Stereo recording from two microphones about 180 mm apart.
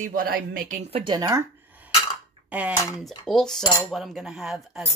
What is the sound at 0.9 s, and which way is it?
Speech, 25° right (ahead or behind).